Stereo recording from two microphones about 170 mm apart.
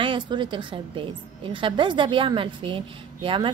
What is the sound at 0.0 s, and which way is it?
A woman's voice, 30° right (ahead or behind).